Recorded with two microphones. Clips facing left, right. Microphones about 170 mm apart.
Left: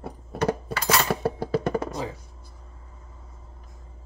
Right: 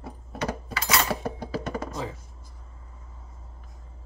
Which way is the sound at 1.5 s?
60° left (ahead or behind).